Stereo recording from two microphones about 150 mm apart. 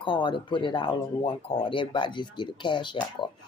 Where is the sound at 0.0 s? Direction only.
35° left (ahead or behind).